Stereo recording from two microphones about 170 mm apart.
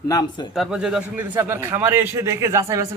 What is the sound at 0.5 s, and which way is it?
A man's voice, centre (ahead or behind).